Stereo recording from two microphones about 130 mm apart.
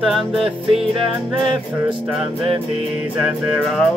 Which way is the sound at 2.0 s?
Centre (ahead or behind).